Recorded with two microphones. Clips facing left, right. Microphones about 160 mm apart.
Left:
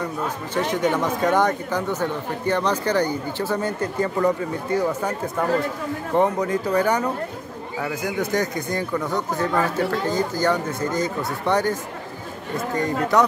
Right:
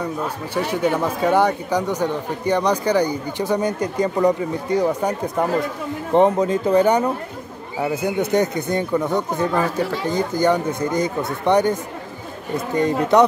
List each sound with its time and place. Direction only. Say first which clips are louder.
0.6 s speech: right 1 dB; 10° right (ahead or behind)